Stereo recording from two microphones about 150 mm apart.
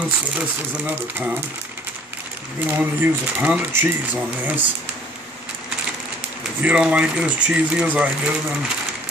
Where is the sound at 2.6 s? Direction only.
10° right (ahead or behind).